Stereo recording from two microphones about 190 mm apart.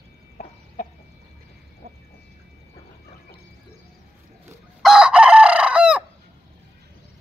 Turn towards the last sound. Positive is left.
turn(degrees=-5)  # may be behind; listen again after turning